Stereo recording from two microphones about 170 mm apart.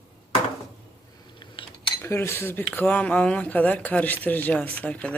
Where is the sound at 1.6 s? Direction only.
30° left (ahead or behind).